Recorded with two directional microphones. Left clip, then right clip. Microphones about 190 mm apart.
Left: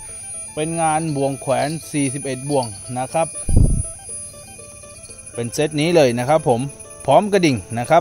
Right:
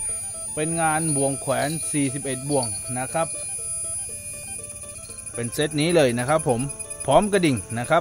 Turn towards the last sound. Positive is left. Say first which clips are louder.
# left 5 dB
turn(degrees=20)  # may be behind; listen again after turning